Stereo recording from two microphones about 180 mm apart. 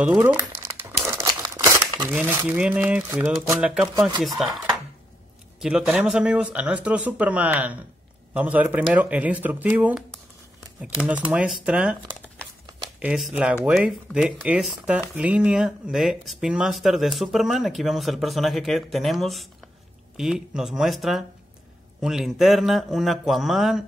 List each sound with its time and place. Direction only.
0.0 s crumpling: 10° right (ahead or behind)
1.2 s a sound: 20° right (ahead or behind)
2.1 s speech: 10° right (ahead or behind)
13.0 s speech: 5° right (ahead or behind)